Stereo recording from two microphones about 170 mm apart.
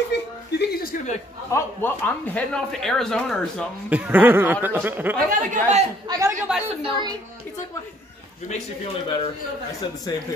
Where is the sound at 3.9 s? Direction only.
10° right (ahead or behind); by 7.2 s 25° right (ahead or behind).